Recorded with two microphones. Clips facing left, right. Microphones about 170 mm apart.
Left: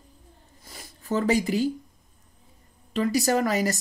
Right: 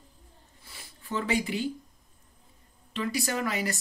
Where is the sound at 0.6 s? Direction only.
40° left (ahead or behind).